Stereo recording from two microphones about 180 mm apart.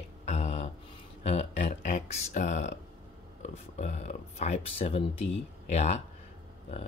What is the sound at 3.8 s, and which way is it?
Speech, 40° left (ahead or behind).